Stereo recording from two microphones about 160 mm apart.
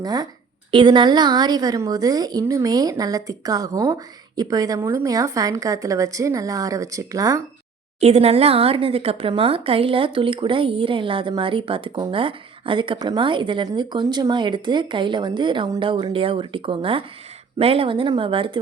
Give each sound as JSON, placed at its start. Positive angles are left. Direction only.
{"t": 0.0, "sound": "a woman's voice", "side_deg": -25}
{"t": 8.0, "sound": "speech", "side_deg": -40}